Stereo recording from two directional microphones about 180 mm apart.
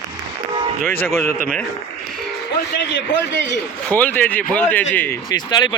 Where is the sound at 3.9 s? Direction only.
10° left (ahead or behind).